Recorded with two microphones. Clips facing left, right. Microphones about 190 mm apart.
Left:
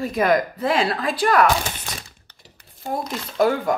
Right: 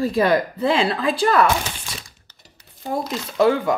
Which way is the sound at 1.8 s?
55° left (ahead or behind).